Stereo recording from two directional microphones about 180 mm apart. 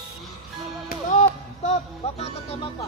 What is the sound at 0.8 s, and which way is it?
Music, 40° left (ahead or behind).